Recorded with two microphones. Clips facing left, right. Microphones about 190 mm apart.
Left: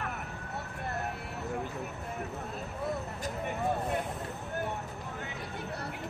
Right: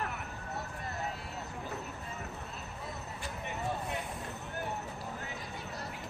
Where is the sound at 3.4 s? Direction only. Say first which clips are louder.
Left 5 dB; 50° left (ahead or behind).